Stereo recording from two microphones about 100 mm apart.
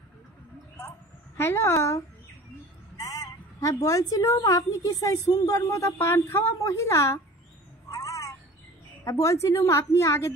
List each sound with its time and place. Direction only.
0.7 s a sound: 20° left (ahead or behind)
3.0 s a woman's voice: 35° left (ahead or behind)
7.9 s cat: 30° left (ahead or behind)
9.0 s a woman's voice: 35° left (ahead or behind)